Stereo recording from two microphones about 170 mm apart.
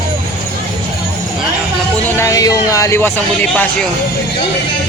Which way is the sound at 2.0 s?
15° left (ahead or behind).